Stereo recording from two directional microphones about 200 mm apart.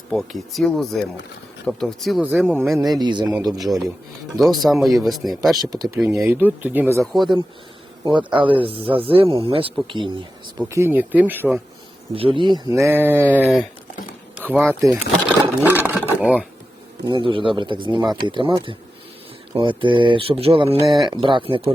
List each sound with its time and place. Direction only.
0.1 s speech: centre (ahead or behind)
3.0 s speech: 20° right (ahead or behind)
3.6 s speech: centre (ahead or behind)
5.5 s speech: 20° right (ahead or behind); by 7.3 s centre (ahead or behind)
8.0 s speech: 25° right (ahead or behind)
10.6 s speech: 10° right (ahead or behind)
12.1 s speech: 25° right (ahead or behind); by 13.4 s 10° right (ahead or behind)
13.4 s speech: centre (ahead or behind)
14.3 s a sound: 10° right (ahead or behind)
14.8 s speech: 10° right (ahead or behind)
17.0 s speech: 25° right (ahead or behind)
20.8 s speech: centre (ahead or behind)
21.1 s speech: 25° right (ahead or behind)